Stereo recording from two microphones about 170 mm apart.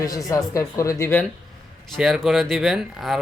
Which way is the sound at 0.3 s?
20° left (ahead or behind).